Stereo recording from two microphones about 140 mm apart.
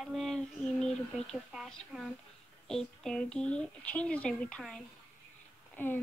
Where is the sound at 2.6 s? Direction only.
5° left (ahead or behind).